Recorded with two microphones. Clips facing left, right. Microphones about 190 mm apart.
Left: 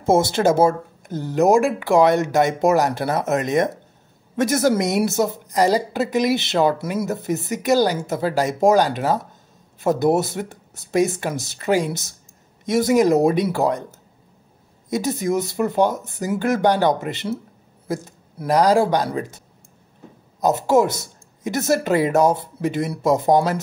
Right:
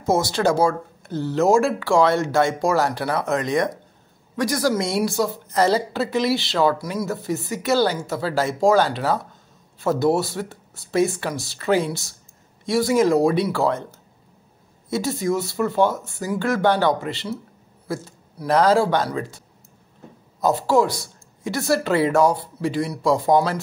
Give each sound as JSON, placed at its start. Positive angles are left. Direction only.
{"t": 0.2, "sound": "a woman's voice", "side_deg": 20}